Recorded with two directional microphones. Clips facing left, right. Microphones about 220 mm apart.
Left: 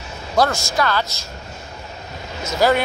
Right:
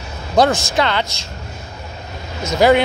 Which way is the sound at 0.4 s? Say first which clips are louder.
Right 4 dB; 20° right (ahead or behind).